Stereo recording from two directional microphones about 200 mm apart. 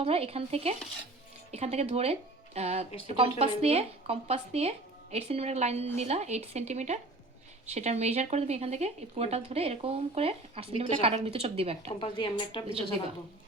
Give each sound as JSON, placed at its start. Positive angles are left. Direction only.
{"t": 0.0, "sound": "speech", "side_deg": -30}
{"t": 11.9, "sound": "speech", "side_deg": 25}